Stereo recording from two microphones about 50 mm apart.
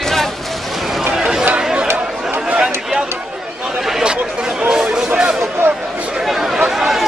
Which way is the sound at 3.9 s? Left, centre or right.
Centre.